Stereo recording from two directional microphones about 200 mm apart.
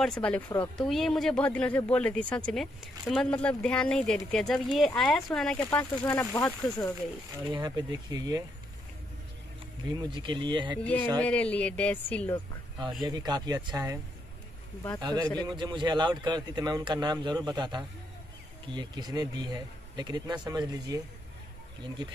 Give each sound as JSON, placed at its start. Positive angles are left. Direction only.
{"t": 0.0, "sound": "speech", "side_deg": 5}
{"t": 7.4, "sound": "a man's voice", "side_deg": -20}
{"t": 9.8, "sound": "a man's voice", "side_deg": -20}
{"t": 10.8, "sound": "speech", "side_deg": 10}
{"t": 13.0, "sound": "a man's voice", "side_deg": -20}
{"t": 15.0, "sound": "a man's voice", "side_deg": -20}